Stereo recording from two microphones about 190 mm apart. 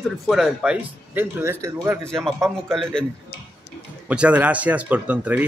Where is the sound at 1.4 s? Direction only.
15° right (ahead or behind).